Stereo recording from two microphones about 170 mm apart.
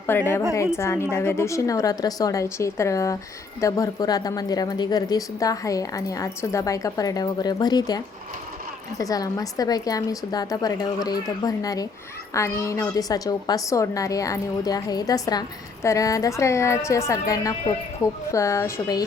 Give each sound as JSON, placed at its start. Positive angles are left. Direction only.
{"t": 0.1, "sound": "a woman's voice", "side_deg": 15}